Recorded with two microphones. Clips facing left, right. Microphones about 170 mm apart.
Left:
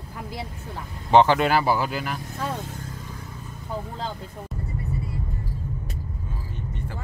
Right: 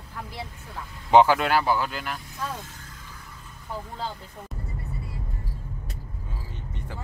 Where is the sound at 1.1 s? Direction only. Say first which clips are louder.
Even; 10° right (ahead or behind).